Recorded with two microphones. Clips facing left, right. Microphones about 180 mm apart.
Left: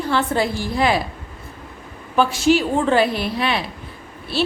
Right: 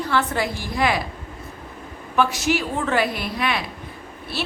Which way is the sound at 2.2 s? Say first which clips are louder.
Left 4 dB; 30° left (ahead or behind).